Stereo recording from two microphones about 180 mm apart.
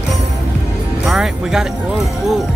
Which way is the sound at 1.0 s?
Centre (ahead or behind).